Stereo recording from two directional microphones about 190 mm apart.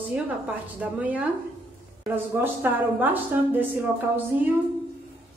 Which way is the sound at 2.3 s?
10° right (ahead or behind).